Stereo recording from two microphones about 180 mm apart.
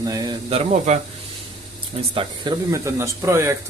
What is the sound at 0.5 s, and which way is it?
Speech, 35° right (ahead or behind).